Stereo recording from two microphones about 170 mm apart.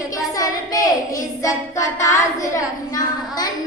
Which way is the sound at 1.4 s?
20° left (ahead or behind).